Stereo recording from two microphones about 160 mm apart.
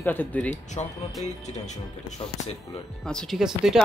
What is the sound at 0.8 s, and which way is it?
Speech, 40° left (ahead or behind).